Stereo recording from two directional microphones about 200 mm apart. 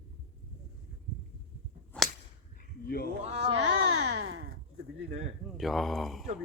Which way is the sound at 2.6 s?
50° left (ahead or behind).